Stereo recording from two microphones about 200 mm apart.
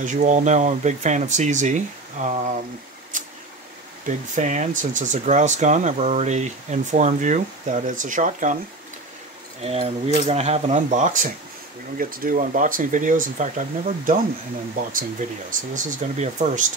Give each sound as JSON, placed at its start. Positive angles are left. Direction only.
{"t": 0.0, "sound": "speech", "side_deg": -40}
{"t": 4.0, "sound": "speech", "side_deg": -35}
{"t": 9.6, "sound": "speech", "side_deg": -30}